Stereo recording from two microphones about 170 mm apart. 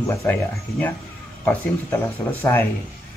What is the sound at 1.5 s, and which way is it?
Speech, 10° left (ahead or behind).